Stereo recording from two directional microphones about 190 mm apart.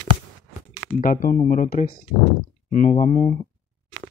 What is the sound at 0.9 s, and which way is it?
Speech, 45° left (ahead or behind).